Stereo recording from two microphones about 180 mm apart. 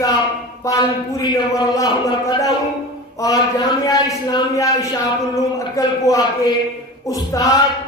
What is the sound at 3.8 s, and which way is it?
A man's voice, 20° left (ahead or behind).